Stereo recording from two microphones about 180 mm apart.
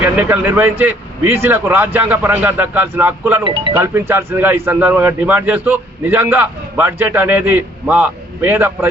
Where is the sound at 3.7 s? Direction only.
10° right (ahead or behind).